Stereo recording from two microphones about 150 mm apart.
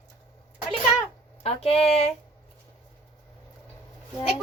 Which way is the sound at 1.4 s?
40° left (ahead or behind).